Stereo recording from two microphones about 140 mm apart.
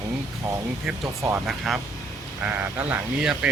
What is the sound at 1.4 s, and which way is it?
Speech, 5° right (ahead or behind).